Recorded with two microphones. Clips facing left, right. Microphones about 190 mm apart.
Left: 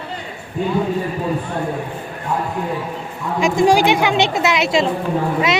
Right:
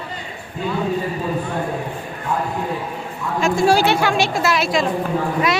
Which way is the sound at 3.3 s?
15° left (ahead or behind).